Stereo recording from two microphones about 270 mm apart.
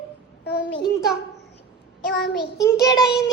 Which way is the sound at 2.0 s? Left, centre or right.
Left.